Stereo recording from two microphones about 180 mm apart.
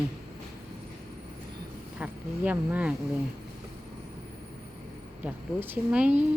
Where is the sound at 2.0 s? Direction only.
10° right (ahead or behind).